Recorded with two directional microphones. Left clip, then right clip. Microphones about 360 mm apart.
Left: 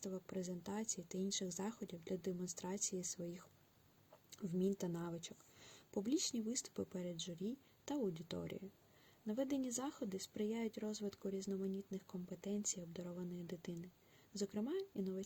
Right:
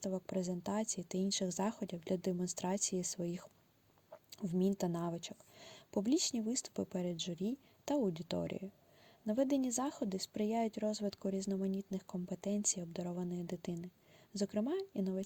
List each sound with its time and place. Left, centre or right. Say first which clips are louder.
0.0 s speech: right 7 dB; centre